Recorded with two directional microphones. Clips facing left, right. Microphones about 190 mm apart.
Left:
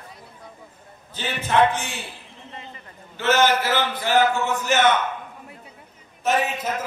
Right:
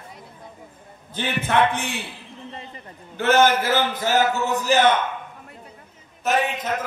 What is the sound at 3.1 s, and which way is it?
A man's voice, 55° right (ahead or behind).